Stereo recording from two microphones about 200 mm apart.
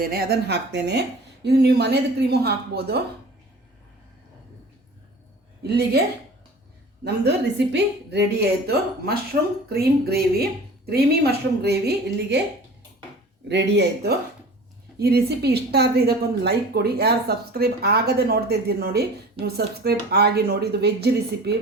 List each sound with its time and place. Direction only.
0.0 s a woman's voice: 50° right (ahead or behind)
5.6 s a woman's voice: 55° right (ahead or behind)
7.0 s a woman's voice: 60° right (ahead or behind)
13.5 s a woman's voice: 60° right (ahead or behind)